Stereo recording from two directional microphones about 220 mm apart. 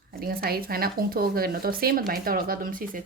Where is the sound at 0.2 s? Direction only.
45° right (ahead or behind).